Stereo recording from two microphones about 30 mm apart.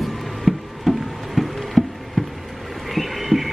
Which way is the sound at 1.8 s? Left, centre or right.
Centre.